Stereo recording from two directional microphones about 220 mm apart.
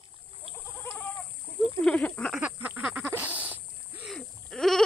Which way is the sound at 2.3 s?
5° right (ahead or behind).